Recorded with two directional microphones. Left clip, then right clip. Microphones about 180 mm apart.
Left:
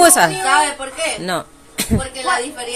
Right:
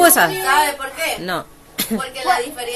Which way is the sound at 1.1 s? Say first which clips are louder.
Left 2 dB; 10° left (ahead or behind).